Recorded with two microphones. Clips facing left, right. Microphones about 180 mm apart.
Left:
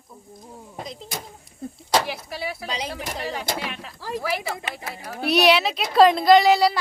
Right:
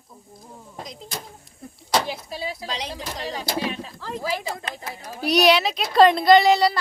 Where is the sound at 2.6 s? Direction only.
Centre (ahead or behind).